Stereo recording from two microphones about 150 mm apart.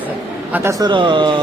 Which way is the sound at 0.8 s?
35° right (ahead or behind).